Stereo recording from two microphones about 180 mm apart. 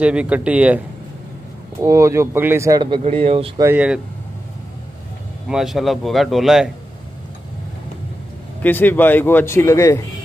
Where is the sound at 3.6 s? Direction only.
10° right (ahead or behind).